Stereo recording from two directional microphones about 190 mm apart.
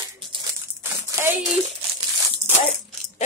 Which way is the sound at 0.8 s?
15° right (ahead or behind).